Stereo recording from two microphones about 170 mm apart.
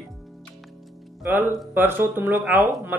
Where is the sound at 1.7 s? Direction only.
10° right (ahead or behind).